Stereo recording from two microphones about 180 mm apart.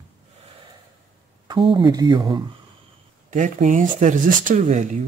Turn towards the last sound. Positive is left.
turn(degrees=-40)  # may be behind; listen again after turning